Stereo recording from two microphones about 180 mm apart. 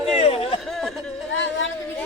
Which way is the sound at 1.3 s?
90° left.